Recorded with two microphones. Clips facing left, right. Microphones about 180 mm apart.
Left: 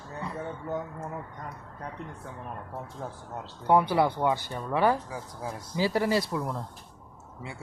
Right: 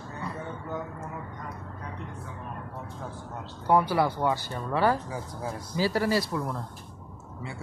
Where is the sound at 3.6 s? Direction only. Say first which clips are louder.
Left 1 dB; 20° left (ahead or behind).